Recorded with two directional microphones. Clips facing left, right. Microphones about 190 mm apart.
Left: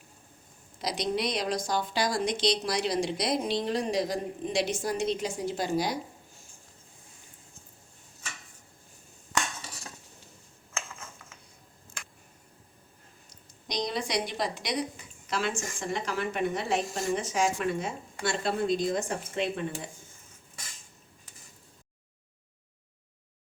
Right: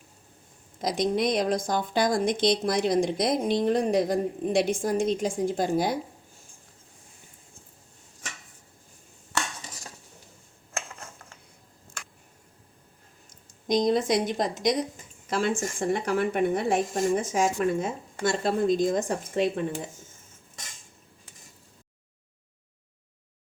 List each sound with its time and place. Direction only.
0.8 s speech: 50° right (ahead or behind)
9.6 s dishes: centre (ahead or behind)
13.3 s speech: 50° right (ahead or behind)